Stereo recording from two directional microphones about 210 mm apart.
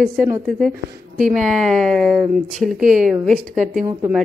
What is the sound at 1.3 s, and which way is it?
A woman's voice, centre (ahead or behind).